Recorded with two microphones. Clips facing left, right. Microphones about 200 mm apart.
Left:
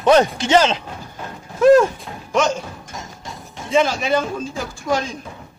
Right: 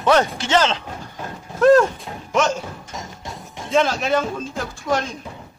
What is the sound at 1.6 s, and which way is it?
Mechanisms, centre (ahead or behind).